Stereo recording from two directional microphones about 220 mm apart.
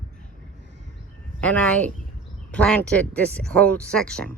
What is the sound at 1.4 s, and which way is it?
Speech, 5° left (ahead or behind).